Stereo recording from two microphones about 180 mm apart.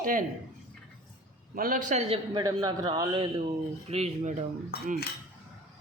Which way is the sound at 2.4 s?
25° right (ahead or behind).